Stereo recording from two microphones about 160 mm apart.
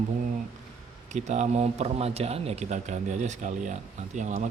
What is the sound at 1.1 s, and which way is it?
A man's voice, 45° right (ahead or behind).